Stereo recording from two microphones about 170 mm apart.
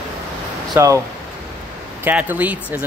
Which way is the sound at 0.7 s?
20° right (ahead or behind).